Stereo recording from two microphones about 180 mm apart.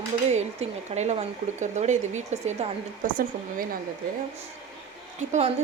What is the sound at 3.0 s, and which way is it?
Speech, 50° right (ahead or behind).